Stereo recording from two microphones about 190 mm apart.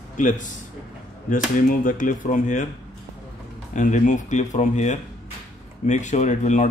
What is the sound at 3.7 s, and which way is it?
Speech, 40° left (ahead or behind).